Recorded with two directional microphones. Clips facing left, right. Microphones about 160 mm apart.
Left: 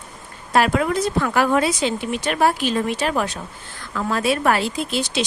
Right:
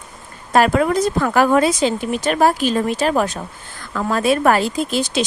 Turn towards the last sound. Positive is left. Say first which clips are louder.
# right 4 dB
turn(degrees=-45)  # may be behind; listen again after turning